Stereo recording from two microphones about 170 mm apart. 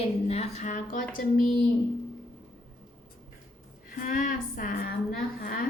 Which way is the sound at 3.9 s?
50° left (ahead or behind).